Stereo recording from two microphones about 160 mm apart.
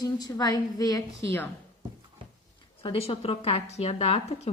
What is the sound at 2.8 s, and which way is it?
A woman's voice, 35° left (ahead or behind).